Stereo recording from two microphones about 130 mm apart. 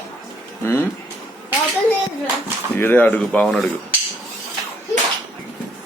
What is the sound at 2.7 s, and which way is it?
Speech, 15° left (ahead or behind).